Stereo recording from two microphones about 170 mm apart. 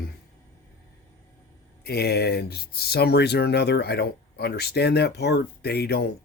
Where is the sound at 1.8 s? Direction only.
70° left (ahead or behind).